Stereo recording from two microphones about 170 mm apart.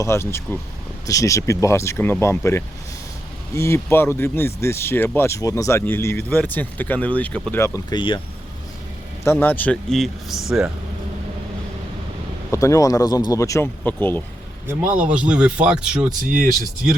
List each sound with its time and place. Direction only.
0.0 s speech: 15° left (ahead or behind)
9.2 s speech: 15° left (ahead or behind)
12.5 s speech: 20° left (ahead or behind)
14.7 s speech: 10° right (ahead or behind)
16.2 s speech: 50° right (ahead or behind)